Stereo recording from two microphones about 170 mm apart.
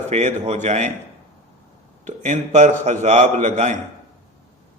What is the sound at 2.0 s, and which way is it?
A man's voice, 40° right (ahead or behind).